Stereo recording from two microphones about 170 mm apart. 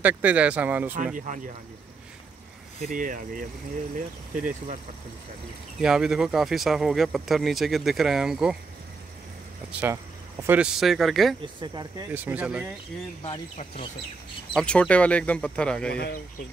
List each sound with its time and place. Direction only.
0.0 s speech: 10° right (ahead or behind)
0.9 s speech: 50° right (ahead or behind)
2.9 s speech: 50° right (ahead or behind)
5.8 s speech: 5° right (ahead or behind)
9.7 s speech: 10° right (ahead or behind)
11.4 s speech: 25° right (ahead or behind)
12.1 s speech: 10° right (ahead or behind)
14.5 s speech: 5° left (ahead or behind)
15.9 s speech: 65° left (ahead or behind)